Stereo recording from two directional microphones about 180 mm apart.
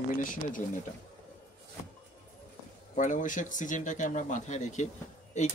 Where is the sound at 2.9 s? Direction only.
45° left (ahead or behind).